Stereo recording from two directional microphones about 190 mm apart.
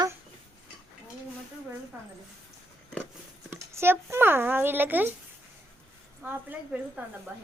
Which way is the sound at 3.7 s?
15° right (ahead or behind).